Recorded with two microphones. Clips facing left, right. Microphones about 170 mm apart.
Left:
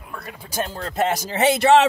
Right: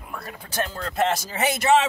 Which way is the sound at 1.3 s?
30° left (ahead or behind).